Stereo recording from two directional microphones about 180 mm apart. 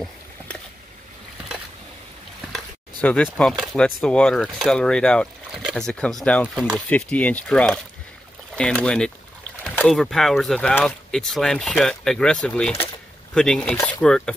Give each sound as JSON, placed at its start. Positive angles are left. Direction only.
{"t": 2.5, "sound": "a sound", "side_deg": 5}
{"t": 3.3, "sound": "speech", "side_deg": 0}
{"t": 13.7, "sound": "speech", "side_deg": 15}
{"t": 14.0, "sound": "speech", "side_deg": 5}